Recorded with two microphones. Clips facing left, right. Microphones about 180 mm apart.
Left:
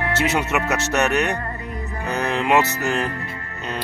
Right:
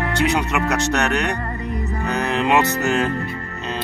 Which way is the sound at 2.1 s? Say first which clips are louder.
Even; 15° right (ahead or behind).